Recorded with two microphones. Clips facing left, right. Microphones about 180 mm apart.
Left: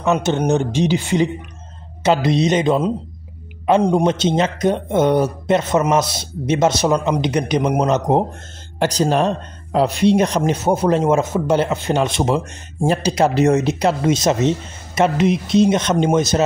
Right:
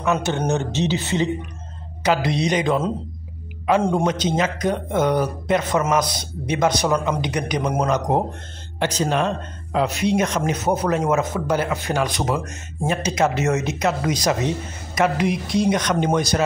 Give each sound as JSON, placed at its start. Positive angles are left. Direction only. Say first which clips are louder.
{"t": 0.0, "sound": "a man's voice", "louder": "left 4 dB", "side_deg": 20}
{"t": 8.7, "sound": "speech", "louder": "left 4 dB", "side_deg": 40}